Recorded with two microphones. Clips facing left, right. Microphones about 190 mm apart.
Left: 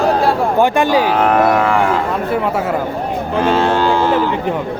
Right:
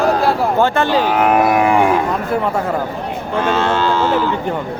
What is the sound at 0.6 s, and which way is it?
Speech, 15° left (ahead or behind).